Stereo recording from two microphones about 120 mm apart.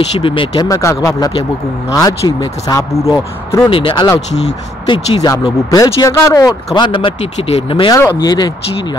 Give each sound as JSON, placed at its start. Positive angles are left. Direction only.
{"t": 0.2, "sound": "speech", "side_deg": 45}
{"t": 0.7, "sound": "speech", "side_deg": 25}
{"t": 3.7, "sound": "speech", "side_deg": 45}
{"t": 6.8, "sound": "speech", "side_deg": 45}
{"t": 7.7, "sound": "speech", "side_deg": 40}